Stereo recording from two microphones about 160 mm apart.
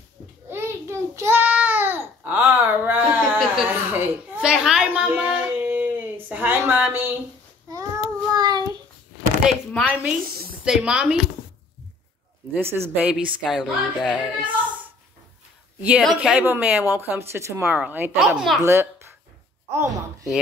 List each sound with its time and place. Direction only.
0.5 s child singing: 15° right (ahead or behind)
3.2 s a sound: centre (ahead or behind)
3.6 s a sound: 10° right (ahead or behind)
7.7 s child singing: 20° right (ahead or behind)
9.5 s a woman's voice: centre (ahead or behind)
10.2 s a sound: 70° right (ahead or behind)
10.6 s a woman's voice: 5° right (ahead or behind)
12.5 s a woman's voice: 15° right (ahead or behind)
16.0 s a woman's voice: centre (ahead or behind)
18.6 s a woman's voice: 15° right (ahead or behind)